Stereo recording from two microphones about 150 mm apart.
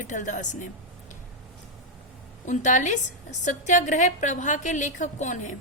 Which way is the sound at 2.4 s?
55° left (ahead or behind).